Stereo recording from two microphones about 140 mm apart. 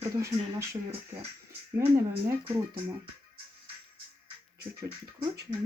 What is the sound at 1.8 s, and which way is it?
Speech, 20° right (ahead or behind).